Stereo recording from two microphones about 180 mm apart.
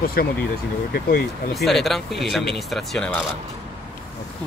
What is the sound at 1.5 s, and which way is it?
Speech, centre (ahead or behind).